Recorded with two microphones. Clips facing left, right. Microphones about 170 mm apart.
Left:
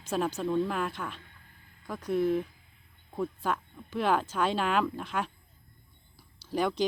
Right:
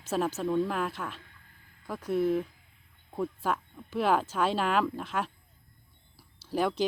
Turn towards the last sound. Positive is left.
turn(degrees=-5)  # may be behind; listen again after turning